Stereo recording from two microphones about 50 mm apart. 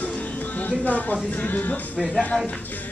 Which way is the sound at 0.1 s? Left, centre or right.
Left.